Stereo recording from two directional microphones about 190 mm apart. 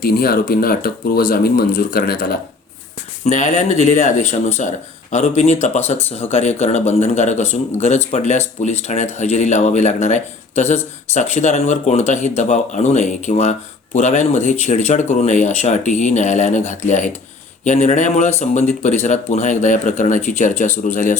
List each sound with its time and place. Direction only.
0.0 s speech: 50° left (ahead or behind)
3.2 s speech: 40° left (ahead or behind)